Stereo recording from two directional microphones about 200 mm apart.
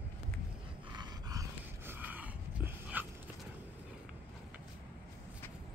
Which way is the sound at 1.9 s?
10° right (ahead or behind).